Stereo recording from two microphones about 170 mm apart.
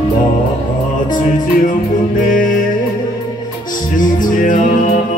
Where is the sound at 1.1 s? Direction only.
50° left (ahead or behind).